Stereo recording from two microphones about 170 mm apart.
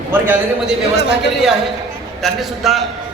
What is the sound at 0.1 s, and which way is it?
Speech, 10° right (ahead or behind).